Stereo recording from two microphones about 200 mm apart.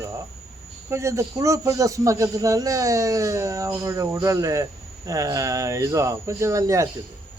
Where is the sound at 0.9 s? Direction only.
15° right (ahead or behind).